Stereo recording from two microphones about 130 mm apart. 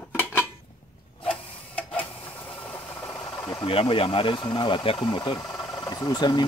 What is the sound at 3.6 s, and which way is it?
Speech, 45° left (ahead or behind).